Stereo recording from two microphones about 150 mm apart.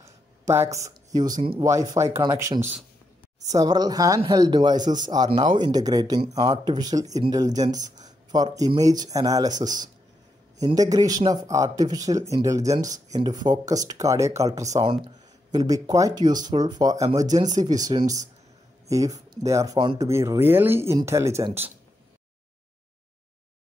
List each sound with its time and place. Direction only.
0.0 s a sound: 20° right (ahead or behind)
0.8 s speech: 25° right (ahead or behind)
10.6 s speech: 25° right (ahead or behind)
17.4 s speech: 55° right (ahead or behind)
17.8 s speech: 25° right (ahead or behind)